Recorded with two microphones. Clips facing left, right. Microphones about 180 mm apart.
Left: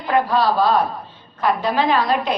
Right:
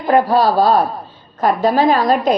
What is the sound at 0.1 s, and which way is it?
A woman's voice, 45° right (ahead or behind).